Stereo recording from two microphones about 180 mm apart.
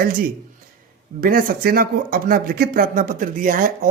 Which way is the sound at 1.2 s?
55° right (ahead or behind).